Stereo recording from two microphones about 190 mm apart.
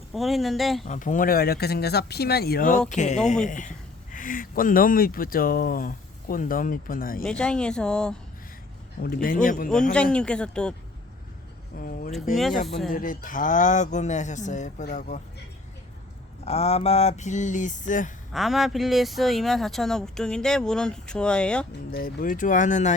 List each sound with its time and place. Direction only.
0.1 s speech: centre (ahead or behind)
0.9 s speech: 40° left (ahead or behind)
7.3 s speech: 5° left (ahead or behind)
9.0 s speech: 50° left (ahead or behind)
9.9 s speech: 5° left (ahead or behind)
11.8 s speech: 50° left (ahead or behind)
16.4 s speech: 35° left (ahead or behind)
18.3 s speech: centre (ahead or behind)
21.9 s speech: 50° left (ahead or behind)